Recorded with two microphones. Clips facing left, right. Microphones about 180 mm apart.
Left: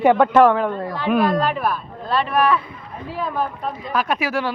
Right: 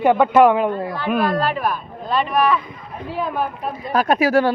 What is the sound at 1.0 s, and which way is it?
A man's voice, centre (ahead or behind).